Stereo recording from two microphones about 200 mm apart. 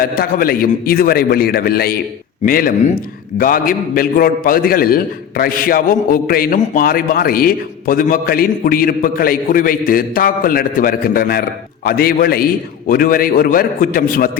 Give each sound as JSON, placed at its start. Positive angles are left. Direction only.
{"t": 0.0, "sound": "a man's voice", "side_deg": 45}